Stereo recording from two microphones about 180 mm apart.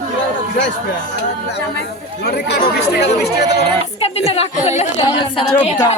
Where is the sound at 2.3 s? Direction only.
65° left (ahead or behind).